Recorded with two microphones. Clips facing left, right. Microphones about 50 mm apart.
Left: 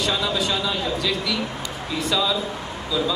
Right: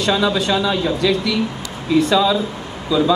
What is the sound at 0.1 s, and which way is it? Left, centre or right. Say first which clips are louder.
A man's voice: right 6 dB; right.